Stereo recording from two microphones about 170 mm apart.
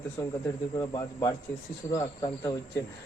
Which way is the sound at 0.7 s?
20° left (ahead or behind).